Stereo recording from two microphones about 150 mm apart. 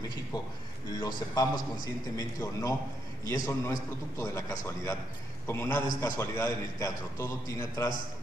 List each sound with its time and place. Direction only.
0.9 s a man's voice: 25° left (ahead or behind)